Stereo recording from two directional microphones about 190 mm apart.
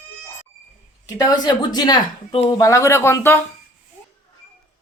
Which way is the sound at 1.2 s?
20° left (ahead or behind).